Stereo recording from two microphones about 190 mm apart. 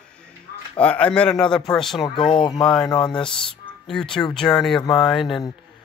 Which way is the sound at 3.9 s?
5° left (ahead or behind).